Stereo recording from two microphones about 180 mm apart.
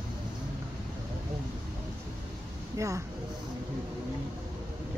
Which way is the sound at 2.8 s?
15° right (ahead or behind).